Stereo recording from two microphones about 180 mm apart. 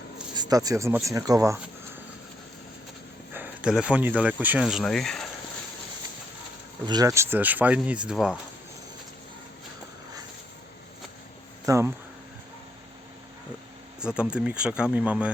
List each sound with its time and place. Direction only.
0.3 s speech: 20° right (ahead or behind)
3.3 s speech: 10° right (ahead or behind)
6.8 s speech: 20° right (ahead or behind); by 8.4 s 5° right (ahead or behind)
11.6 s speech: 15° right (ahead or behind)
14.0 s speech: 5° right (ahead or behind)